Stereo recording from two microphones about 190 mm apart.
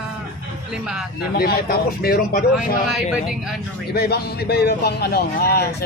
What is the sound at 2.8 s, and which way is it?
Speech, centre (ahead or behind).